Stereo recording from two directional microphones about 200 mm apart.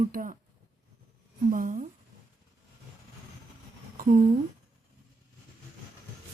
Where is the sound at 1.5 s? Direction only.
45° right (ahead or behind).